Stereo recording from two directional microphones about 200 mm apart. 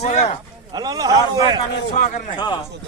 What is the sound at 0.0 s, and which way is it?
Speech, 35° left (ahead or behind).